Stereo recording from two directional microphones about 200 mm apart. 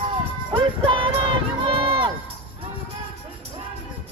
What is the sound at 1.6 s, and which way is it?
Run, 25° right (ahead or behind).